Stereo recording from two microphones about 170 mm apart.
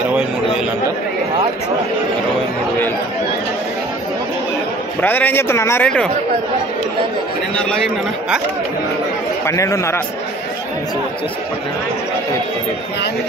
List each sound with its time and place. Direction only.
5.0 s speech: 10° left (ahead or behind)
9.5 s speech: 15° left (ahead or behind)